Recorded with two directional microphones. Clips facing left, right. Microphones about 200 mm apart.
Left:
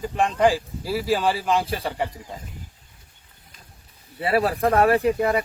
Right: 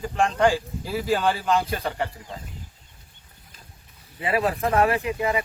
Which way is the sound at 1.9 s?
15° left (ahead or behind).